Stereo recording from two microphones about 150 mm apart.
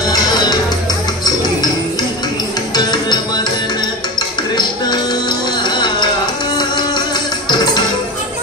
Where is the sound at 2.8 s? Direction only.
30° left (ahead or behind).